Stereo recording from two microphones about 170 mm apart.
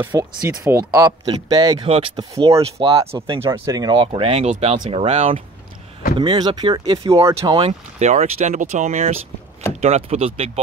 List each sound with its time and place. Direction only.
0.0 s speech: 15° right (ahead or behind); by 2.2 s 30° right (ahead or behind)
2.3 s speech: 20° right (ahead or behind)
2.6 s speech: 35° right (ahead or behind)
3.1 s speech: 15° right (ahead or behind)
7.5 s speech: 40° right (ahead or behind)